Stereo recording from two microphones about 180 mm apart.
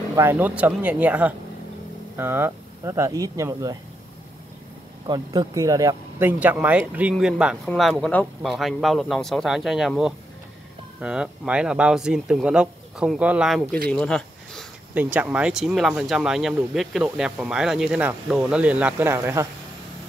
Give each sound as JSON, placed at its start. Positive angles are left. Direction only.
{"t": 0.1, "sound": "speech", "side_deg": -15}
{"t": 5.0, "sound": "speech", "side_deg": -25}
{"t": 13.9, "sound": "a sound", "side_deg": 5}
{"t": 15.0, "sound": "speech", "side_deg": -10}